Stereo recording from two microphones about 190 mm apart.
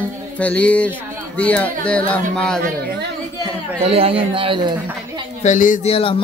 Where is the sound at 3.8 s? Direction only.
30° right (ahead or behind).